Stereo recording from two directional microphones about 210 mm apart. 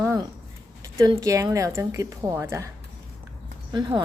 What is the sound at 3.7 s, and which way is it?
Speech, 20° right (ahead or behind).